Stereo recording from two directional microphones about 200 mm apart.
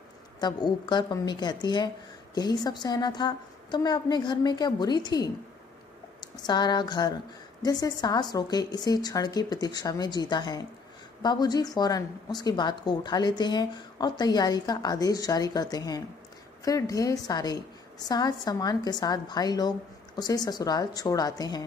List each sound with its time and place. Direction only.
0.4 s a woman's voice: 20° left (ahead or behind)